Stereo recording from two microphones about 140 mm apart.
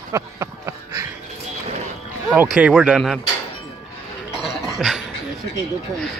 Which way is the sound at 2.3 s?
10° right (ahead or behind).